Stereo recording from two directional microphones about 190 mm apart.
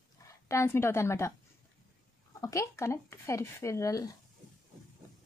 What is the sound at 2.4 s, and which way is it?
A woman's voice, 15° left (ahead or behind).